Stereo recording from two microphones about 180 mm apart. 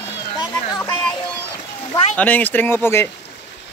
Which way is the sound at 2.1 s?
10° left (ahead or behind).